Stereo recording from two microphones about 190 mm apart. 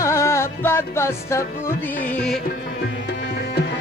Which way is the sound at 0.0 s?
15° left (ahead or behind).